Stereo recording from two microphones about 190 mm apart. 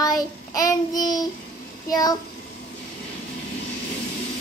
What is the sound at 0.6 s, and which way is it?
Child singing, 20° left (ahead or behind).